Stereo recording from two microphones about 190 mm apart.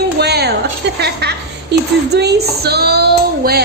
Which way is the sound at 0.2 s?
60° right (ahead or behind).